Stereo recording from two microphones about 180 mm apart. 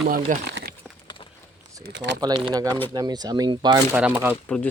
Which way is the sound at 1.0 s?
25° left (ahead or behind).